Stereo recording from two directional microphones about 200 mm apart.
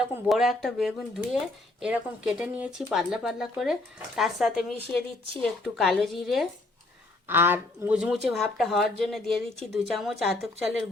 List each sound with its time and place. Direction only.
0.3 s speech: centre (ahead or behind)
7.3 s speech: 10° right (ahead or behind)